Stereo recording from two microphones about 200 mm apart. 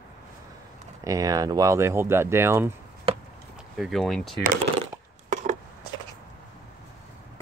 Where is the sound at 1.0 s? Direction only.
15° right (ahead or behind).